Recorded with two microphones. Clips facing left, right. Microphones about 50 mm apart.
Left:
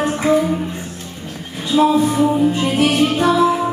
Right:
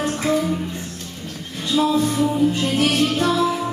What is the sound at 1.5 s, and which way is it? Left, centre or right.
Music, centre.